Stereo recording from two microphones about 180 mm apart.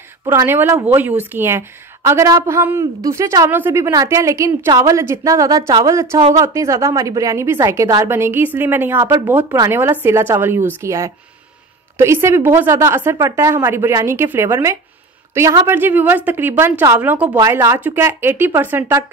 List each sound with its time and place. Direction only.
0.2 s speech: 15° right (ahead or behind)